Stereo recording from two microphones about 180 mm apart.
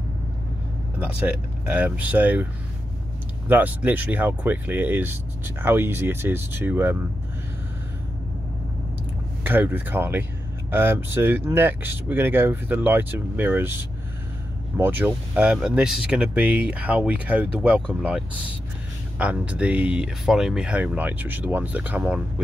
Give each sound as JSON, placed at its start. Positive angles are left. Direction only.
{"t": 0.9, "sound": "speech", "side_deg": -10}
{"t": 3.4, "sound": "speech", "side_deg": -10}
{"t": 9.4, "sound": "speech", "side_deg": -10}
{"t": 19.1, "sound": "speech", "side_deg": -5}